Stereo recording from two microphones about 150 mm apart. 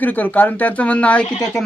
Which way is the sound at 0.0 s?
10° left (ahead or behind).